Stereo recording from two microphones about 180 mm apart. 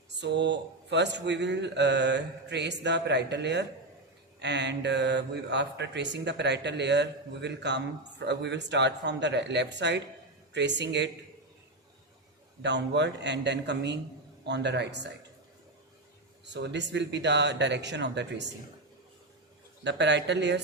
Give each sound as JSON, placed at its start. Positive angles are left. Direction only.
{"t": 0.2, "sound": "speech", "side_deg": -75}
{"t": 12.6, "sound": "speech", "side_deg": -75}
{"t": 16.5, "sound": "speech", "side_deg": -75}
{"t": 19.8, "sound": "speech", "side_deg": -75}